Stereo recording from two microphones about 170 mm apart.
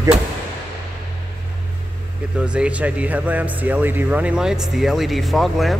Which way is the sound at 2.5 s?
5° right (ahead or behind).